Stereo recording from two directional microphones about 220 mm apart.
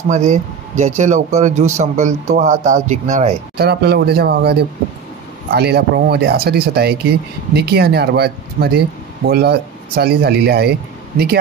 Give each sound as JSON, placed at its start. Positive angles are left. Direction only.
{"t": 0.1, "sound": "speech", "side_deg": -30}
{"t": 3.5, "sound": "speech", "side_deg": -45}